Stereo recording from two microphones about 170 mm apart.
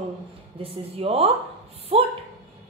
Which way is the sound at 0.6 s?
35° right (ahead or behind).